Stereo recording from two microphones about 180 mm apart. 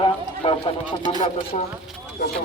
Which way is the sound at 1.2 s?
40° left (ahead or behind).